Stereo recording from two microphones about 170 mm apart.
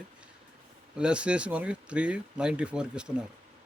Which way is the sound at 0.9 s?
5° right (ahead or behind).